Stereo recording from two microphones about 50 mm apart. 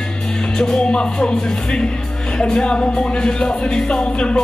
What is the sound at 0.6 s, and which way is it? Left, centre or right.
Music, centre.